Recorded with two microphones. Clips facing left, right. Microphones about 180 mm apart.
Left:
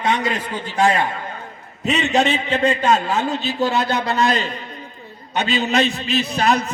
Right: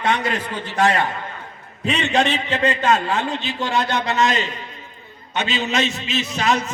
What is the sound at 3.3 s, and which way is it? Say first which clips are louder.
A man's voice: left 3 dB; 40° left (ahead or behind).